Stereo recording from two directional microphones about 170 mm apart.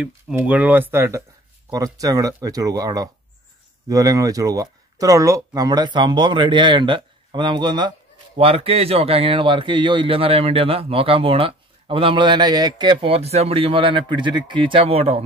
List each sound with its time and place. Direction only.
0.0 s speech: 5° right (ahead or behind); by 15.2 s 35° right (ahead or behind)